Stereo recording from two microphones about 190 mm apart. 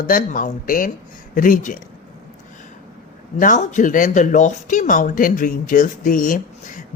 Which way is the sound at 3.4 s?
40° left (ahead or behind).